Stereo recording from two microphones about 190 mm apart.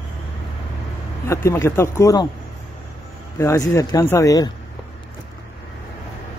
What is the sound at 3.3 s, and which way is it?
Speech, 15° left (ahead or behind).